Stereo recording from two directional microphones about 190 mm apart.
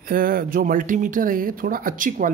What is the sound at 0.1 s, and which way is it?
Speech, 50° right (ahead or behind).